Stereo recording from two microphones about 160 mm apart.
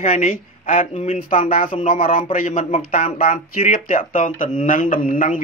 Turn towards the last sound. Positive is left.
turn(degrees=55)  # may be behind; listen again after turning